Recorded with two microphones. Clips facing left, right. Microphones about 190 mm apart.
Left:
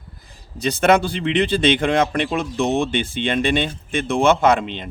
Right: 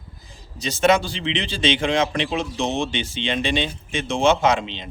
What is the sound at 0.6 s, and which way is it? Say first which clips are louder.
Speech: left 2 dB; 60° left (ahead or behind).